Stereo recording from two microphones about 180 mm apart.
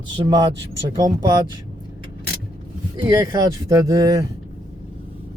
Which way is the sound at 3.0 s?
20° right (ahead or behind).